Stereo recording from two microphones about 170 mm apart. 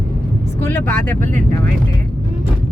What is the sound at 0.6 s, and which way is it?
Speech, 15° left (ahead or behind).